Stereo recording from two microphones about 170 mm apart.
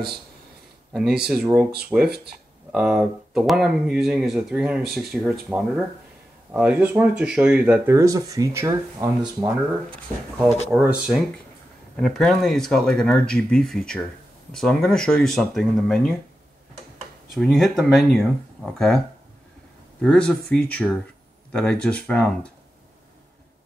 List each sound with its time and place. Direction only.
0.9 s speech: centre (ahead or behind)
1.4 s speech: 15° right (ahead or behind)
1.8 s speech: 5° right (ahead or behind)
10.7 s speech: 10° right (ahead or behind)
17.3 s speech: centre (ahead or behind)
20.0 s speech: 5° left (ahead or behind)